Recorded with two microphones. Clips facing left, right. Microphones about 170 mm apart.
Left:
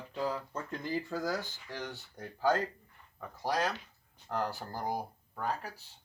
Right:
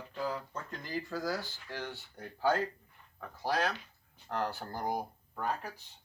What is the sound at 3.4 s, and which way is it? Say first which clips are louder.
Speech: even; 10° left (ahead or behind).